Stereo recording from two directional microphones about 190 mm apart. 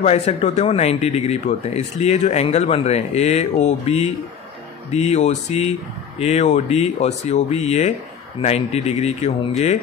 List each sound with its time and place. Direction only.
0.0 s speech: 35° left (ahead or behind)